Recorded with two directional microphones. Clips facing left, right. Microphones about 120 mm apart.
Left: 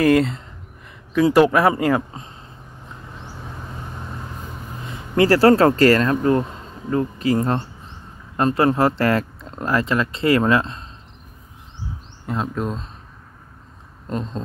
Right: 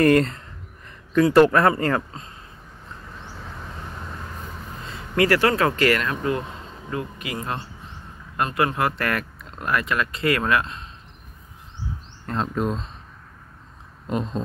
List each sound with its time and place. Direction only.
0.0 s speech: 5° left (ahead or behind)
2.9 s vehicle: 15° left (ahead or behind)
4.8 s speech: 25° left (ahead or behind)
12.3 s speech: centre (ahead or behind)